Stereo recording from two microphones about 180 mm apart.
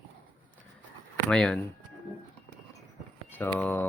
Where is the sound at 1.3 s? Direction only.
5° left (ahead or behind).